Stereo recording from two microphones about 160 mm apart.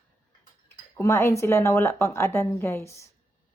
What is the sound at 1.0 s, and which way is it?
A woman's voice, 15° left (ahead or behind).